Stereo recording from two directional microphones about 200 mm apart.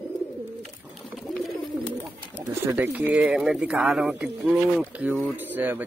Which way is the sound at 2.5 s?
10° right (ahead or behind).